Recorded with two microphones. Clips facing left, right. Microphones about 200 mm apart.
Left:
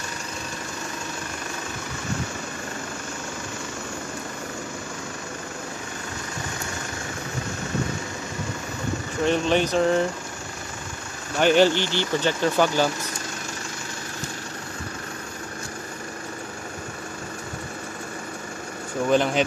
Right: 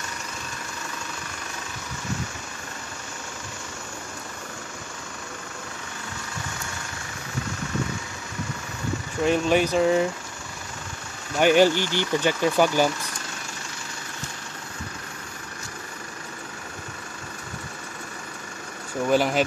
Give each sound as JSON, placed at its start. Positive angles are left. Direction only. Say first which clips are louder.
{"t": 9.2, "sound": "speech", "louder": "right 1 dB", "side_deg": -5}
{"t": 11.3, "sound": "speech", "louder": "even", "side_deg": -10}
{"t": 19.0, "sound": "speech", "louder": "even", "side_deg": -10}